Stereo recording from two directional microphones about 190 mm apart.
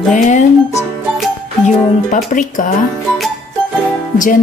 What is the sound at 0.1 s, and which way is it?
Music, 40° left (ahead or behind).